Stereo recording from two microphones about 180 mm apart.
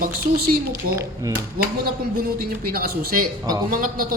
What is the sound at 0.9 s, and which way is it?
Speech, 15° right (ahead or behind).